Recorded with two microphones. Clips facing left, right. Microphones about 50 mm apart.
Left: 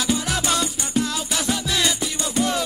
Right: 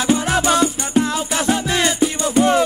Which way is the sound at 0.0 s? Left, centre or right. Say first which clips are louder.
Right 6 dB; right.